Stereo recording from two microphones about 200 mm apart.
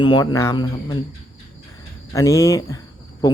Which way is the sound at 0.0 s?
20° left (ahead or behind).